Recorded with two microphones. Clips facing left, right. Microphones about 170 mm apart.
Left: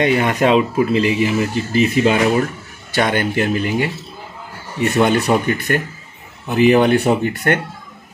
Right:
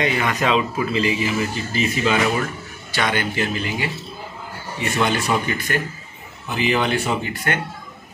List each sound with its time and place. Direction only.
0.0 s speech: 50° left (ahead or behind)